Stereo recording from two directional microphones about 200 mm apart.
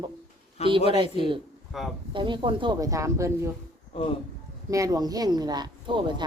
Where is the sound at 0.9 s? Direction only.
25° right (ahead or behind).